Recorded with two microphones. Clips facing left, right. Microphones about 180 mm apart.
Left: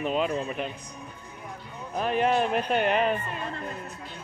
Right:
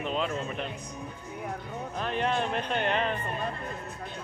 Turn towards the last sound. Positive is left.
turn(degrees=10)  # may be behind; listen again after turning